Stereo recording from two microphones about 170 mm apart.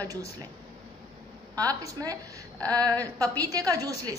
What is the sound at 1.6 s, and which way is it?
A woman's voice, 20° right (ahead or behind).